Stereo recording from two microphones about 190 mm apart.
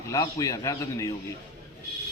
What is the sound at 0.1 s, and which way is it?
A man's voice, 15° left (ahead or behind).